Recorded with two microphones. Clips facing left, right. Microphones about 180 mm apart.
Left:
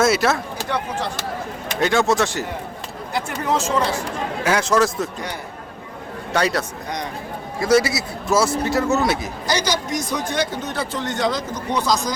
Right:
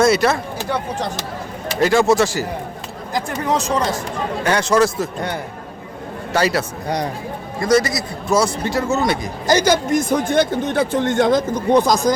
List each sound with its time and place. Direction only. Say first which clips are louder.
0.0 s a man's voice: right 3 dB; centre (ahead or behind)
1.8 s a man's voice: right 4 dB; centre (ahead or behind)
3.2 s speech: right 2 dB; 35° right (ahead or behind)
4.4 s a man's voice: right 2 dB; centre (ahead or behind)
6.3 s a man's voice: right 2 dB; 5° right (ahead or behind)
7.6 s a man's voice: right 1 dB; 10° left (ahead or behind)
9.5 s a man's voice: right 7 dB; 50° right (ahead or behind)